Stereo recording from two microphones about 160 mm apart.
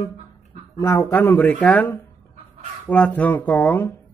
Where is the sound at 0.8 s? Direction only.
15° left (ahead or behind).